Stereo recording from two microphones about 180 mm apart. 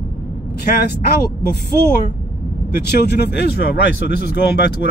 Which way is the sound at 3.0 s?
65° left (ahead or behind).